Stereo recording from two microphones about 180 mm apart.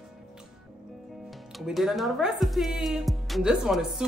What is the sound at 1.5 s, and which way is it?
Speech, centre (ahead or behind).